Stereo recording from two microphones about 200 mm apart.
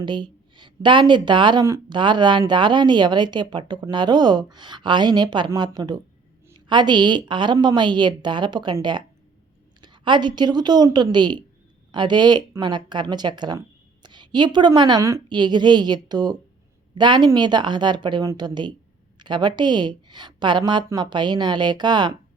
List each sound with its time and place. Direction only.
0.0 s speech: 25° right (ahead or behind)